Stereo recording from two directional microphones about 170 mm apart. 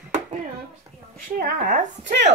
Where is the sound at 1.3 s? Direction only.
55° right (ahead or behind).